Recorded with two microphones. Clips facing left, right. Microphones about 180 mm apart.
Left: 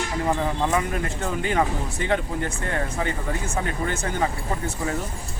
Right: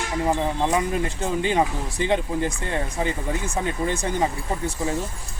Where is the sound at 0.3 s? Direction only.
15° right (ahead or behind).